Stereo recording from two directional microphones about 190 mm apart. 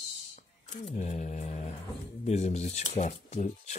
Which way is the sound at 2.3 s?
35° left (ahead or behind).